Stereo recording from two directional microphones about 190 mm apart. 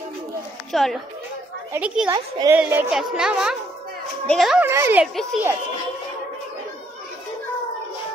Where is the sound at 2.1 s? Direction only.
25° right (ahead or behind).